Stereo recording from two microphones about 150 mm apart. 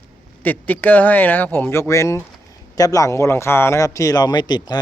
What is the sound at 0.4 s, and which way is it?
A man's voice, 10° left (ahead or behind).